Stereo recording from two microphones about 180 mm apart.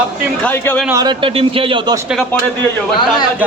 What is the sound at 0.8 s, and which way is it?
A man's voice, 20° right (ahead or behind).